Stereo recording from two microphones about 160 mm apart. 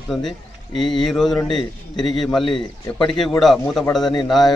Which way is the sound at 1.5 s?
25° left (ahead or behind).